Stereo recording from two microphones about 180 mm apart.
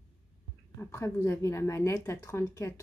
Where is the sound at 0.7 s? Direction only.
15° left (ahead or behind).